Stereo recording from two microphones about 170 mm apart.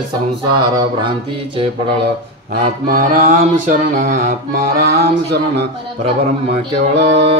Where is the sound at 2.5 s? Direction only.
45° right (ahead or behind).